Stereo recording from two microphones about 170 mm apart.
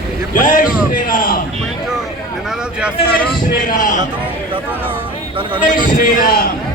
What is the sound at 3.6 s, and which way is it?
Speech, 50° left (ahead or behind).